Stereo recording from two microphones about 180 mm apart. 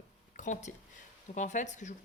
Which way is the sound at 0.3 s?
45° left (ahead or behind).